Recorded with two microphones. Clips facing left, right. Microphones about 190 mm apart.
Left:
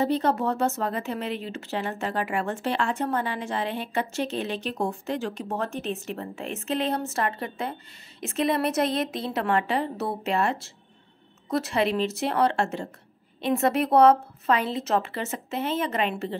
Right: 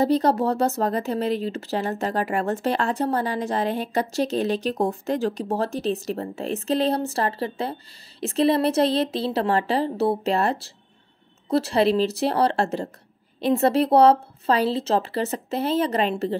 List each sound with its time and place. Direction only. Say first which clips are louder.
0.0 s speech: right 4 dB; 40° right (ahead or behind)